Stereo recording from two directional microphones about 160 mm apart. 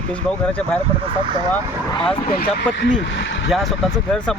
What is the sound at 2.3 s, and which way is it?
Speech, 75° left (ahead or behind).